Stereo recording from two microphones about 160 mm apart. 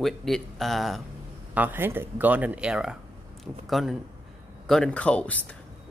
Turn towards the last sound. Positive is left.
turn(degrees=5)  # may be behind; listen again after turning